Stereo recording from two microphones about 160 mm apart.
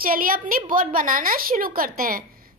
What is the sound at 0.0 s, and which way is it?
A woman's voice, 65° right (ahead or behind).